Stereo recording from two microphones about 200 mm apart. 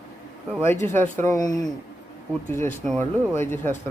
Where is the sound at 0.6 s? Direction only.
10° left (ahead or behind).